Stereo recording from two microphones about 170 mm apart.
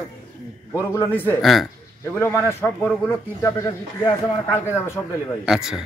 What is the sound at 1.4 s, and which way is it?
Speech, centre (ahead or behind).